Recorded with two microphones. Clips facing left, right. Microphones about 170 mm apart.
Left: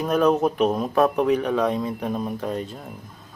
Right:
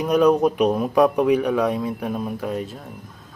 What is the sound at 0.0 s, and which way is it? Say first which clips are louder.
Speech: right 3 dB; 15° right (ahead or behind).